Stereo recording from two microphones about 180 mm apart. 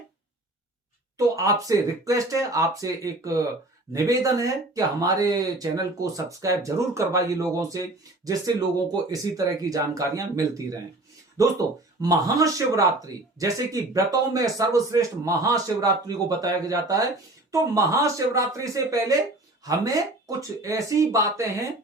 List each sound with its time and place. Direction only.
1.4 s speech: 20° right (ahead or behind)
12.0 s speech: 20° right (ahead or behind)